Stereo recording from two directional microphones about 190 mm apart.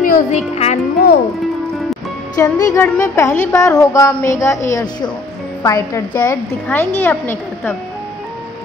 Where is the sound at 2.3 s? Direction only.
20° left (ahead or behind).